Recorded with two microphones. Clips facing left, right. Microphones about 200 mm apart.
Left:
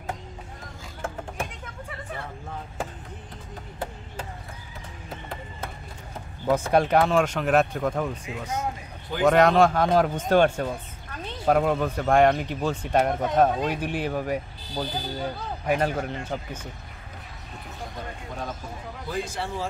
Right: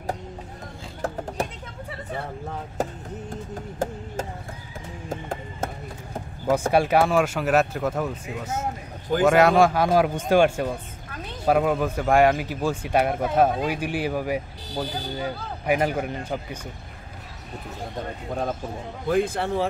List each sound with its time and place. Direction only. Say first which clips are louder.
2.8 s vehicle: right 6 dB; 40° right (ahead or behind)
3.8 s a sound: right 6 dB; 45° right (ahead or behind)
5.1 s music: right 6 dB; 45° right (ahead or behind)
6.7 s speech: even; 10° right (ahead or behind)
18.3 s speech: right 8 dB; 50° right (ahead or behind)